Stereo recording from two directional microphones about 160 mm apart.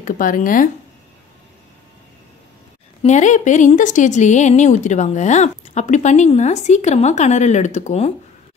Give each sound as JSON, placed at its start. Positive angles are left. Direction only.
{"t": 0.0, "sound": "speech", "side_deg": 55}
{"t": 3.0, "sound": "speech", "side_deg": 45}